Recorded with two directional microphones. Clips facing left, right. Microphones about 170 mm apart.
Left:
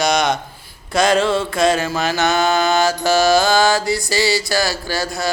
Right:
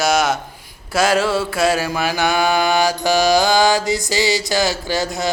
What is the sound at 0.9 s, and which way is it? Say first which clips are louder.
Mantra: left 1 dB; 5° right (ahead or behind).